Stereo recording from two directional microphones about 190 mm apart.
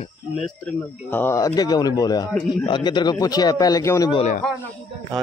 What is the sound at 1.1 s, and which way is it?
A man's voice, 15° left (ahead or behind).